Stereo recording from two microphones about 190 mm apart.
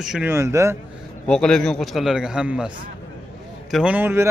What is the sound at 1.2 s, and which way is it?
A man's voice, 5° left (ahead or behind).